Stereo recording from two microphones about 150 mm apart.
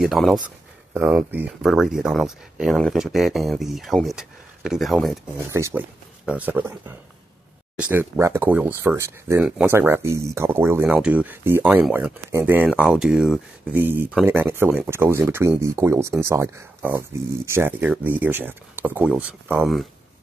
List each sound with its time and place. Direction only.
0.0 s speech: centre (ahead or behind)
5.4 s speech: 20° right (ahead or behind); by 13.7 s 5° right (ahead or behind)
13.7 s speech: 15° right (ahead or behind)
19.6 s speech: centre (ahead or behind)